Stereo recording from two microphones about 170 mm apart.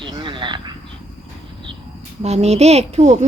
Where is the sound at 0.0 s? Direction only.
30° right (ahead or behind).